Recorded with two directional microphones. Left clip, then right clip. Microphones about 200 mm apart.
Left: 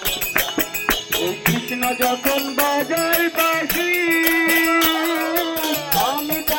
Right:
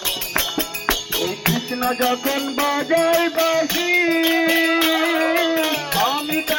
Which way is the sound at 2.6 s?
50° right (ahead or behind).